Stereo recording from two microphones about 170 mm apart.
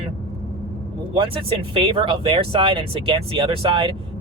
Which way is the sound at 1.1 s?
30° right (ahead or behind).